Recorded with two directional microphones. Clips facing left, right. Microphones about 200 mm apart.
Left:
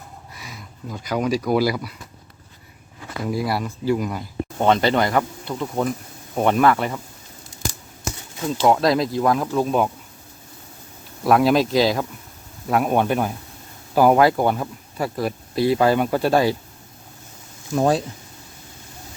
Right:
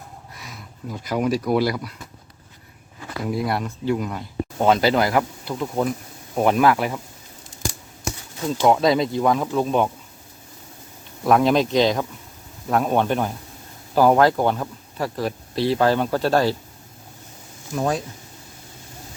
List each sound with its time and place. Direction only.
0.3 s speech: centre (ahead or behind)
3.2 s speech: centre (ahead or behind)
8.6 s speech: centre (ahead or behind)
11.2 s speech: 5° left (ahead or behind)
17.7 s speech: 30° left (ahead or behind)